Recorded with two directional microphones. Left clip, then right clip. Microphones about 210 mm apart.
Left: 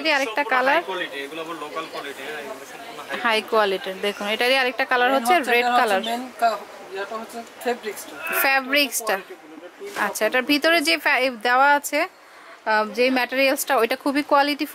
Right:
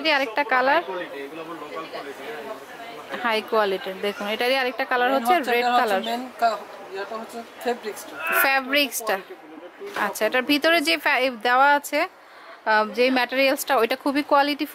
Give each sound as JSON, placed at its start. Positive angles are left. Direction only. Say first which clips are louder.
{"t": 0.0, "sound": "speech", "louder": "even", "side_deg": -5}
{"t": 3.1, "sound": "speech", "louder": "left 2 dB", "side_deg": -5}
{"t": 8.5, "sound": "speech", "louder": "left 1 dB", "side_deg": -5}